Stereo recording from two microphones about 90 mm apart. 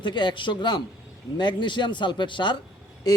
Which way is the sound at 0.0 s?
60° left (ahead or behind).